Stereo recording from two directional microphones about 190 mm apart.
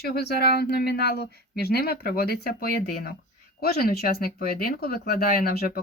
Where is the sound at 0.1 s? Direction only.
55° left (ahead or behind).